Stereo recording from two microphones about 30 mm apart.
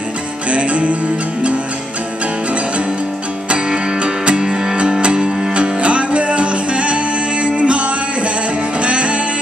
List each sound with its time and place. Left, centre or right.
0.5 s music: right
5.5 s music: right
8.8 s music: right